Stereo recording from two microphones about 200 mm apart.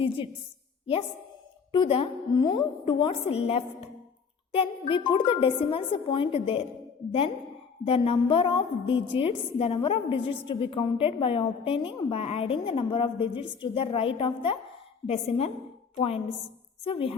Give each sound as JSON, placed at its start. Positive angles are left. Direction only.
{"t": 1.7, "sound": "a woman's voice", "side_deg": 25}
{"t": 7.9, "sound": "a woman's voice", "side_deg": 30}